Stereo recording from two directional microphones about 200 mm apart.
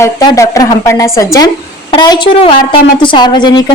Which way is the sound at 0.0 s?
15° left (ahead or behind).